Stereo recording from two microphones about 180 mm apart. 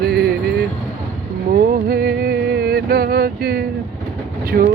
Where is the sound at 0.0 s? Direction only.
60° right (ahead or behind).